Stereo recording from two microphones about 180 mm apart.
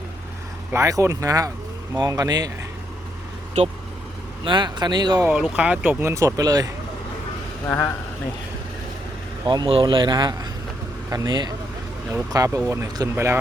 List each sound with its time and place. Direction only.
0.7 s speech: 15° right (ahead or behind)
3.6 s speech: 40° right (ahead or behind)
4.4 s speech: 25° right (ahead or behind)
5.3 s speech: 5° right (ahead or behind); by 6.7 s 20° right (ahead or behind)
7.7 s speech: 15° left (ahead or behind)
9.5 s speech: 30° right (ahead or behind)